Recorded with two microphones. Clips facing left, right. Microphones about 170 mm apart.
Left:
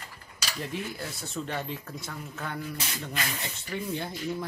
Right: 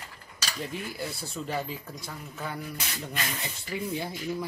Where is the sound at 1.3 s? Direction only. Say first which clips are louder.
Left 1 dB; 5° right (ahead or behind).